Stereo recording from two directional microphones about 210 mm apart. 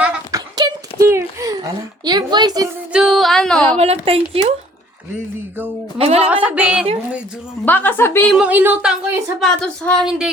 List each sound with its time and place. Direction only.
0.0 s a sound: 5° right (ahead or behind)
0.3 s a sound: 15° right (ahead or behind)
2.0 s speech: 20° right (ahead or behind)
2.9 s speech: centre (ahead or behind)
3.8 s speech: 30° right (ahead or behind)
6.0 s speech: 30° right (ahead or behind)
6.3 s speech: 5° right (ahead or behind)
7.6 s a woman's voice: 10° left (ahead or behind)
8.3 s speech: 5° right (ahead or behind)